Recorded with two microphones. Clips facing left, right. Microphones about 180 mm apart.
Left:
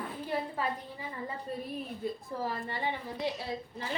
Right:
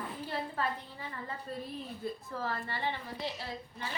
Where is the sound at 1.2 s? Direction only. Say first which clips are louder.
Left 3 dB; 15° left (ahead or behind).